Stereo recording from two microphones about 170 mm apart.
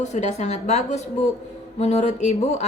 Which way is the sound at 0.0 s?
45° left (ahead or behind).